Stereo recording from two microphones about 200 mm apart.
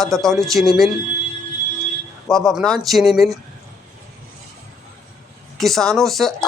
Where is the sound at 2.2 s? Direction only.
Centre (ahead or behind).